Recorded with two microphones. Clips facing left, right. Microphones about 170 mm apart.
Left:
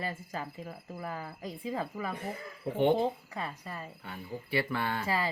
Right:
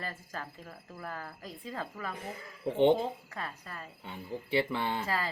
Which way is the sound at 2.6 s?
20° right (ahead or behind).